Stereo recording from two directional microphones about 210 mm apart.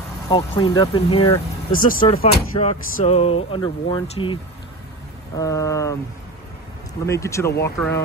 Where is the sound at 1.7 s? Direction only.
40° left (ahead or behind).